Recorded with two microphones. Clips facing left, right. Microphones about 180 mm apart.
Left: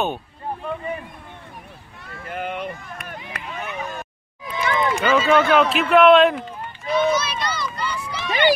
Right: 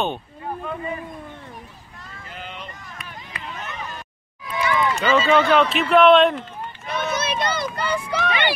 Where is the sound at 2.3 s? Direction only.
55° left (ahead or behind).